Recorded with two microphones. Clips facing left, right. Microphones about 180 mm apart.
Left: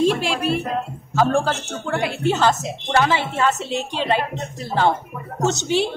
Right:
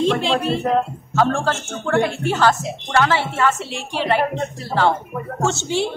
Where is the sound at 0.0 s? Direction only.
10° left (ahead or behind).